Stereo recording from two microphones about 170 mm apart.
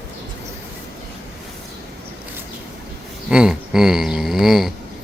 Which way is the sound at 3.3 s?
5° right (ahead or behind).